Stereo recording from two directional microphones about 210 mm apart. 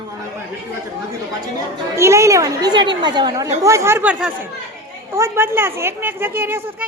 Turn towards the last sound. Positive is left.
turn(degrees=-10)  # may be behind; listen again after turning